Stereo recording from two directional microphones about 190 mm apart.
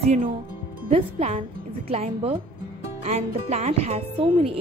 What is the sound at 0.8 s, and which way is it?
Speech, 30° right (ahead or behind).